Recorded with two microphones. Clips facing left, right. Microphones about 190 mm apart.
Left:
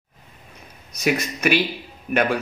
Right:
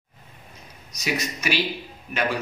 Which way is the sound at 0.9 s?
55° left (ahead or behind).